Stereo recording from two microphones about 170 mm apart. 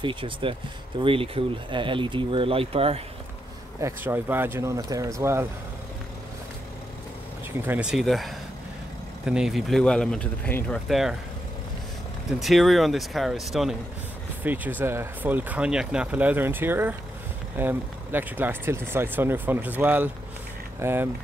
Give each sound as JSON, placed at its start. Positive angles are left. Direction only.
{"t": 0.0, "sound": "speech", "side_deg": -30}
{"t": 3.8, "sound": "speech", "side_deg": -10}
{"t": 7.6, "sound": "speech", "side_deg": -10}
{"t": 12.3, "sound": "speech", "side_deg": 0}